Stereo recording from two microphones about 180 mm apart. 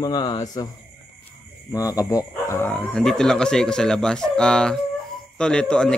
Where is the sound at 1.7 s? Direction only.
20° left (ahead or behind).